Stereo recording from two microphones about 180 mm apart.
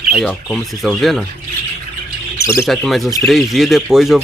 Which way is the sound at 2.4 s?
15° left (ahead or behind).